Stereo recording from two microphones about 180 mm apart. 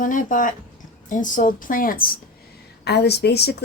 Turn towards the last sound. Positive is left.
turn(degrees=65)  # may be behind; listen again after turning